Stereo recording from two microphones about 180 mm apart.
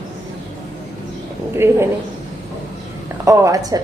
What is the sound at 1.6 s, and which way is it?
Speech, 15° right (ahead or behind).